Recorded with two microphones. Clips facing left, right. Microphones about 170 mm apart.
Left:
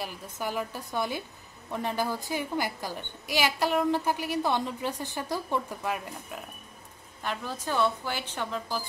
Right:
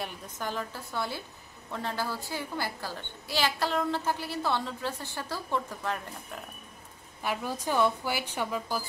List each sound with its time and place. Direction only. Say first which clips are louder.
0.0 s a woman's voice: left 2 dB; 10° left (ahead or behind)
7.2 s a woman's voice: right 2 dB; 10° right (ahead or behind)